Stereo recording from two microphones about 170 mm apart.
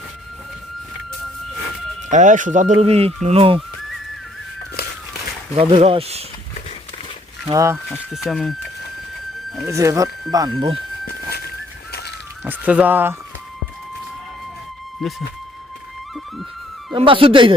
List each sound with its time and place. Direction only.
2.0 s speech: 45° right (ahead or behind)
5.5 s speech: 35° right (ahead or behind)
7.5 s speech: 15° right (ahead or behind)
7.9 s speech: centre (ahead or behind)
9.6 s speech: 15° right (ahead or behind)
11.0 s a sound: 65° left (ahead or behind)
12.5 s speech: 10° right (ahead or behind)
15.0 s speech: centre (ahead or behind)
16.9 s speech: 30° right (ahead or behind)